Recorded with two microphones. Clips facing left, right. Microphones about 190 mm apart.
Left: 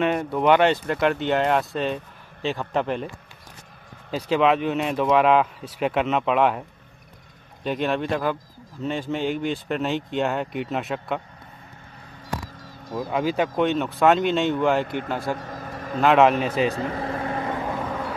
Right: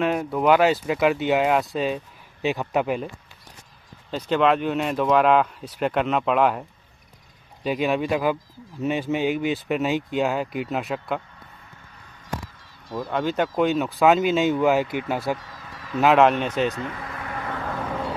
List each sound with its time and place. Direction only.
0.0 s a man's voice: centre (ahead or behind)
4.1 s speech: 5° left (ahead or behind)
7.6 s speech: 5° right (ahead or behind)
12.9 s a man's voice: 5° left (ahead or behind)
15.3 s vehicle: 50° left (ahead or behind)
16.0 s speech: centre (ahead or behind)
16.7 s vehicle: 35° left (ahead or behind)